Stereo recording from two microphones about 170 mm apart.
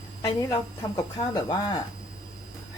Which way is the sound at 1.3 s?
20° left (ahead or behind).